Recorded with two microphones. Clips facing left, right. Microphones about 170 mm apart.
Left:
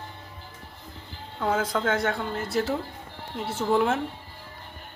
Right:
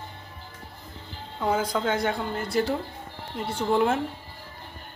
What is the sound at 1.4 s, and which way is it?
A woman's voice, centre (ahead or behind).